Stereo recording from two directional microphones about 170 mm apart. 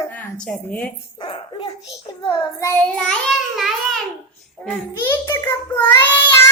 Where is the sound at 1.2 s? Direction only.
30° left (ahead or behind).